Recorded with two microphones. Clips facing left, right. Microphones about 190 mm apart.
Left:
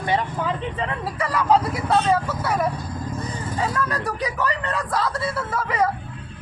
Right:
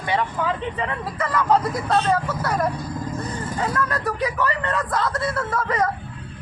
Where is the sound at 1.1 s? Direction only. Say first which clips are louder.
Left 1 dB; 10° left (ahead or behind).